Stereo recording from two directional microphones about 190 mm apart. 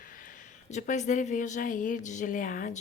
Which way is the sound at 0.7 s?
40° left (ahead or behind).